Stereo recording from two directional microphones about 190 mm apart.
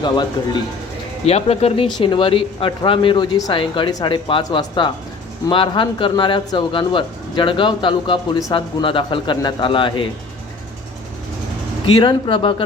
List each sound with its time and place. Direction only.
1.2 s speech: 35° left (ahead or behind)
11.9 s speech: 25° left (ahead or behind)